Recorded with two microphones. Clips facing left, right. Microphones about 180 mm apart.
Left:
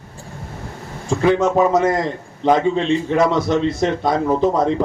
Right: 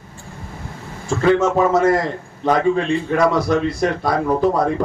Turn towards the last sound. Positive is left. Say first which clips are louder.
# left 1 dB
turn(degrees=20)  # may be behind; listen again after turning